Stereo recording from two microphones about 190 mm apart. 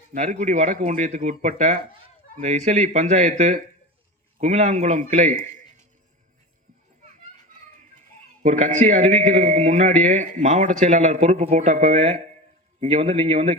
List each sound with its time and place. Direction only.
0.1 s a man's voice: 40° right (ahead or behind)
8.4 s a man's voice: 40° right (ahead or behind)